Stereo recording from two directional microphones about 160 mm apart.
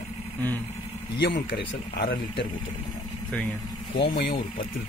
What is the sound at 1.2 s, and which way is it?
Speech, 90° left.